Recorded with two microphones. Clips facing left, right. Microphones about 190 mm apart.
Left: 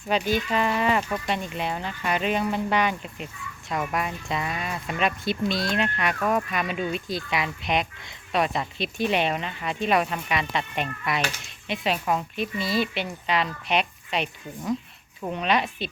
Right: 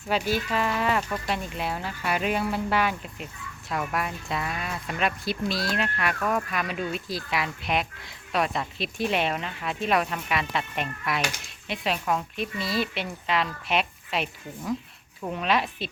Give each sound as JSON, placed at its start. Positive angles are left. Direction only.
{"t": 0.1, "sound": "speech", "side_deg": -5}